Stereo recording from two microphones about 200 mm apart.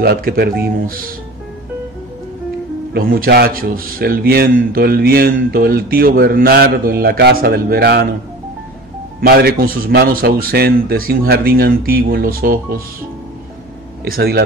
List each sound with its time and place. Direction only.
0.0 s a man's voice: 50° right (ahead or behind)
2.9 s a man's voice: 45° right (ahead or behind)
9.2 s a man's voice: 50° right (ahead or behind)
14.0 s a man's voice: 50° right (ahead or behind)